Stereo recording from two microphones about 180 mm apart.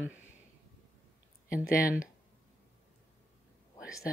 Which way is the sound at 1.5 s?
55° left (ahead or behind).